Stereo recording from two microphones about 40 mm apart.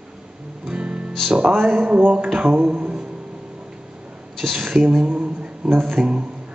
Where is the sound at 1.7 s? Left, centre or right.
Right.